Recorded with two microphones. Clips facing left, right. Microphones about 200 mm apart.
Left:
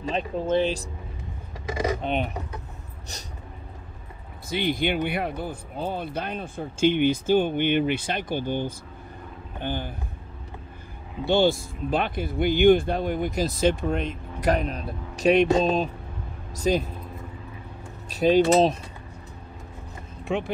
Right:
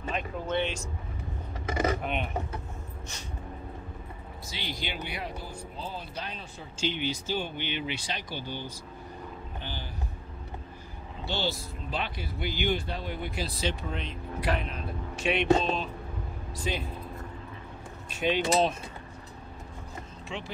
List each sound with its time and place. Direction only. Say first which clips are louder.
0.1 s speech: left 7 dB; 30° left (ahead or behind)
2.0 s speech: left 6 dB; 35° left (ahead or behind)
4.5 s speech: left 13 dB; 55° left (ahead or behind)
11.2 s speech: left 12 dB; 50° left (ahead or behind)
18.1 s speech: left 8 dB; 40° left (ahead or behind)
20.3 s speech: left 12 dB; 55° left (ahead or behind)